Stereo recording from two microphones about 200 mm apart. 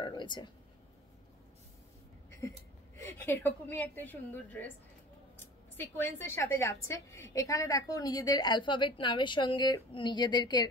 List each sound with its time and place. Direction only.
0.0 s speech: 25° left (ahead or behind)
3.0 s a woman's voice: 10° left (ahead or behind)
5.8 s a woman's voice: 10° left (ahead or behind)